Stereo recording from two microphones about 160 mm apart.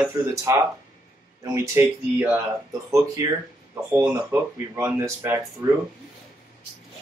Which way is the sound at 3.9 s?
20° right (ahead or behind).